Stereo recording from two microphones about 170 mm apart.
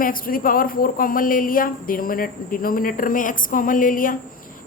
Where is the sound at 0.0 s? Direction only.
55° left (ahead or behind).